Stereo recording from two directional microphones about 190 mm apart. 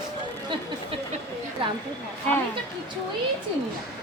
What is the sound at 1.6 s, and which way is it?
Speech, 30° right (ahead or behind).